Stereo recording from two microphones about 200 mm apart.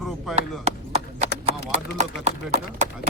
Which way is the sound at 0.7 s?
35° right (ahead or behind).